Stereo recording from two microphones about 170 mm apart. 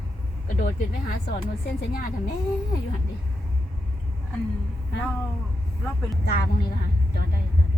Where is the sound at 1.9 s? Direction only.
60° left (ahead or behind).